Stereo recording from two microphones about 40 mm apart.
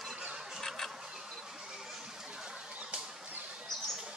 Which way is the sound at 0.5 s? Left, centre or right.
Centre.